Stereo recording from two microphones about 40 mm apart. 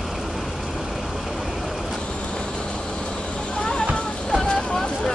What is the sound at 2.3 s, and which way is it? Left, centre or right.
Vehicle, left.